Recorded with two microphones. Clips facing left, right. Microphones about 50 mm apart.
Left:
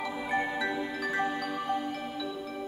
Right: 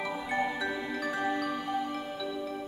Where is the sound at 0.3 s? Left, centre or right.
Centre.